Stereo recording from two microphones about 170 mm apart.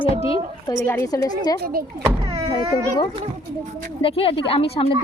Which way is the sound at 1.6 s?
60° right (ahead or behind).